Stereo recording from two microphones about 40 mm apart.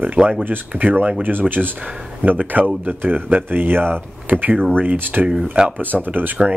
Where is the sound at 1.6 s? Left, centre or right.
Centre.